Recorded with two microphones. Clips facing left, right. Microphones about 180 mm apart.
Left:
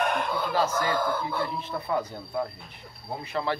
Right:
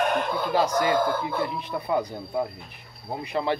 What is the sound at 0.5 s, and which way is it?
Speech, 15° right (ahead or behind).